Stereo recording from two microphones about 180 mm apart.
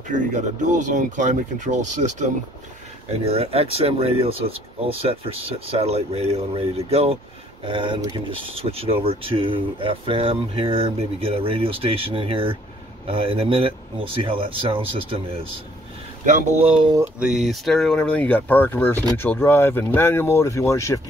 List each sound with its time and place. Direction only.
0.1 s speech: 45° right (ahead or behind)
16.3 s speech: 45° right (ahead or behind)
17.2 s speech: centre (ahead or behind); by 21.0 s 15° left (ahead or behind)